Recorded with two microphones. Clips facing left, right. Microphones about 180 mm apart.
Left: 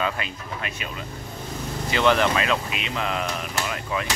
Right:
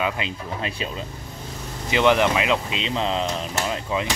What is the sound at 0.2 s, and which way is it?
Speech, 20° right (ahead or behind).